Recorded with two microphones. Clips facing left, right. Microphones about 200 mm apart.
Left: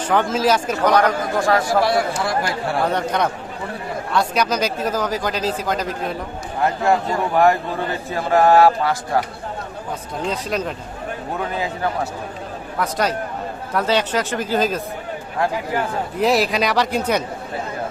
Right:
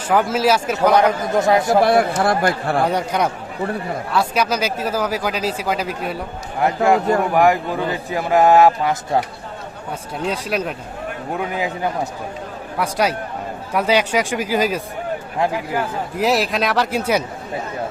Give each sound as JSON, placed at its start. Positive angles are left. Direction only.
{"t": 0.1, "sound": "speech", "side_deg": -5}
{"t": 1.4, "sound": "speech", "side_deg": -20}
{"t": 1.8, "sound": "speech", "side_deg": -55}
{"t": 2.9, "sound": "speech", "side_deg": -10}
{"t": 10.2, "sound": "speech", "side_deg": -10}